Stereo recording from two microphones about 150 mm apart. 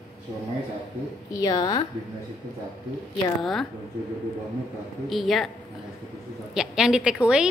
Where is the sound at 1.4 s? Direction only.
25° left (ahead or behind).